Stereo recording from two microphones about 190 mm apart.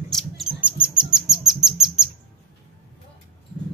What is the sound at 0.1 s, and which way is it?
Rodents, centre (ahead or behind).